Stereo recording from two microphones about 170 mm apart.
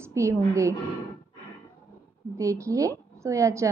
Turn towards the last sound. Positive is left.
turn(degrees=-15)  # may be behind; listen again after turning